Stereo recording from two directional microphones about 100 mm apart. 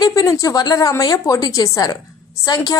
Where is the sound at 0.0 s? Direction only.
40° left (ahead or behind).